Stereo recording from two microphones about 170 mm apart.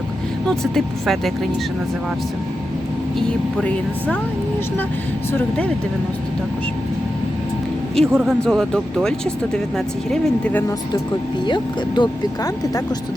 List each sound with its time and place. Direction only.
0.4 s speech: centre (ahead or behind)
8.0 s speech: 5° left (ahead or behind)
11.4 s speech: 25° left (ahead or behind)